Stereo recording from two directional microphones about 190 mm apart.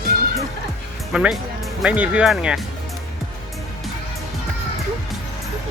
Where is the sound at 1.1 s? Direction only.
5° right (ahead or behind).